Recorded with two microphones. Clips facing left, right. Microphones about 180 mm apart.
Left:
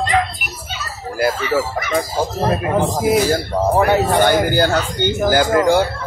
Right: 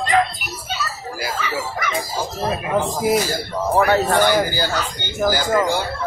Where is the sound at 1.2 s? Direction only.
55° left (ahead or behind).